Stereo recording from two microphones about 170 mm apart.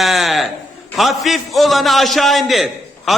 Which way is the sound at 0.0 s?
Centre (ahead or behind).